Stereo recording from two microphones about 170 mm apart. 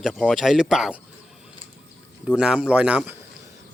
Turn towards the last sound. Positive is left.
turn(degrees=-10)  # may be behind; listen again after turning